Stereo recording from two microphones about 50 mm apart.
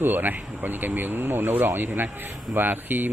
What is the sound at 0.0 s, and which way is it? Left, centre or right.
Speech, right.